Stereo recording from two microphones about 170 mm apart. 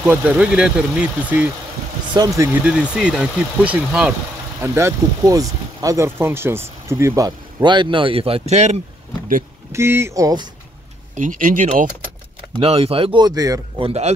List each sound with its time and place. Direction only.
0.0 s speech: 10° right (ahead or behind)
2.1 s speech: 20° right (ahead or behind)
2.6 s speech: 5° right (ahead or behind); by 8.7 s 40° right (ahead or behind)
9.7 s speech: 15° right (ahead or behind)
11.1 s speech: 50° right (ahead or behind)
12.5 s speech: 35° right (ahead or behind)
13.7 s speech: 35° right (ahead or behind)